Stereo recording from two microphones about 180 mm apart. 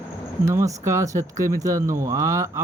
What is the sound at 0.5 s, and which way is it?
Speech, 15° right (ahead or behind).